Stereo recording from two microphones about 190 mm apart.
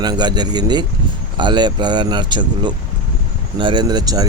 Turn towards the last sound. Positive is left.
turn(degrees=-20)  # may be behind; listen again after turning